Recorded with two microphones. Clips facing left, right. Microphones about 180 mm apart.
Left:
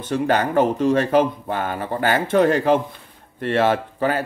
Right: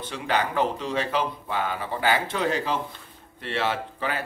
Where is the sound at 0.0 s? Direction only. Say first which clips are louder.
Left 7 dB; 50° left (ahead or behind).